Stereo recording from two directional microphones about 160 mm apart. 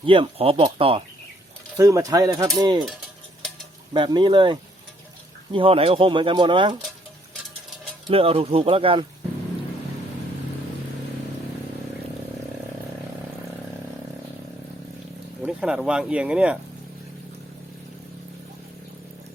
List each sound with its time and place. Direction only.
0.0 s speech: 35° right (ahead or behind)
1.7 s speech: 20° right (ahead or behind)
3.9 s speech: 30° right (ahead or behind)
8.0 s speech: 35° right (ahead or behind)
15.4 s speech: 5° right (ahead or behind)